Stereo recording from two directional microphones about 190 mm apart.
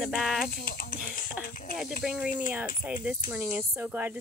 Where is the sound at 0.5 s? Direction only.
50° left (ahead or behind).